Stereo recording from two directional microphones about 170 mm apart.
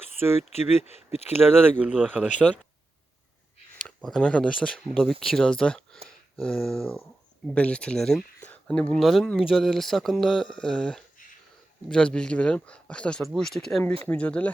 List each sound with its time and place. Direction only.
0.5 s speech: 40° left (ahead or behind)
1.3 s speech: 15° right (ahead or behind)
3.8 s speech: 5° left (ahead or behind)